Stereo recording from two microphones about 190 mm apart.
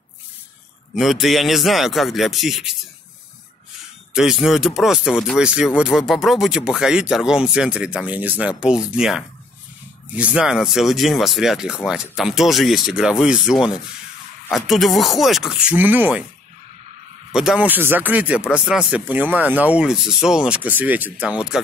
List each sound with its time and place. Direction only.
0.9 s speech: centre (ahead or behind)
4.1 s speech: centre (ahead or behind)
17.3 s speech: 5° right (ahead or behind)